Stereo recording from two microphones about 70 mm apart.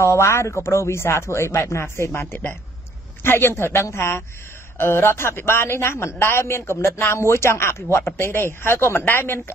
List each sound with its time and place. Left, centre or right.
0.0 s speech: left